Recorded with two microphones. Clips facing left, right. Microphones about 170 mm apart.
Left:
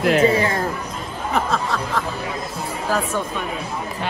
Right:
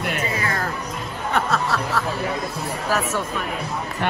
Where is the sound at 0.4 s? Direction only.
25° left (ahead or behind).